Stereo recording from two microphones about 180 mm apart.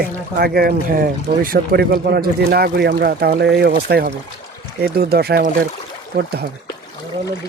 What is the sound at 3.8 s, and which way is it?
Speech, 60° right (ahead or behind).